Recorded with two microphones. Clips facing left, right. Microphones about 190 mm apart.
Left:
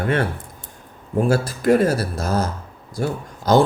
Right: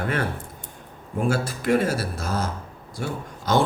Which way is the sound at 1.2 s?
40° left (ahead or behind).